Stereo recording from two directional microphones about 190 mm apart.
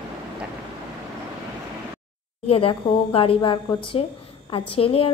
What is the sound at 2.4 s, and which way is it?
A woman's voice, 30° left (ahead or behind).